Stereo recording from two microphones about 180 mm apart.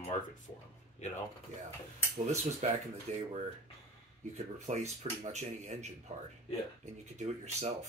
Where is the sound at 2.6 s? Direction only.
40° right (ahead or behind).